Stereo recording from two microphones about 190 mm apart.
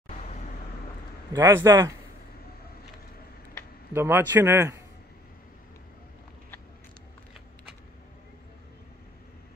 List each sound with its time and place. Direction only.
1.3 s a man's voice: 15° right (ahead or behind)
3.9 s a man's voice: 10° right (ahead or behind)